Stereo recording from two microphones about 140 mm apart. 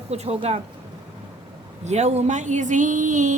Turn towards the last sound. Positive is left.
turn(degrees=-65)  # may be behind; listen again after turning